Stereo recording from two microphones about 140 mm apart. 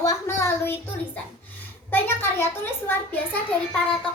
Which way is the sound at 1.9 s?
15° left (ahead or behind).